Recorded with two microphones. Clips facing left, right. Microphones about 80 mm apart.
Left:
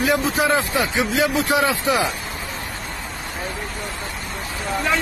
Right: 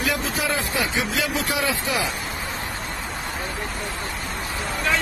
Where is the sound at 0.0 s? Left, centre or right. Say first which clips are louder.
Left 6 dB; left.